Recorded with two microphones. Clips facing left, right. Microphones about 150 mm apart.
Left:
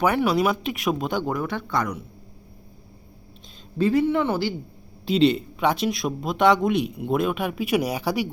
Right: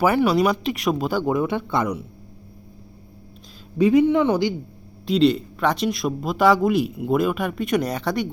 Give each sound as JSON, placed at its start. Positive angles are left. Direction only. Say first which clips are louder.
{"t": 0.0, "sound": "speech", "louder": "right 3 dB", "side_deg": 0}
{"t": 1.2, "sound": "a man's voice", "louder": "right 5 dB", "side_deg": -20}
{"t": 3.8, "sound": "speech", "louder": "right 4 dB", "side_deg": -15}
{"t": 5.0, "sound": "speech", "louder": "right 1 dB", "side_deg": 0}